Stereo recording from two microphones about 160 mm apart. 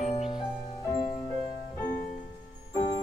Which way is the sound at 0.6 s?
25° left (ahead or behind).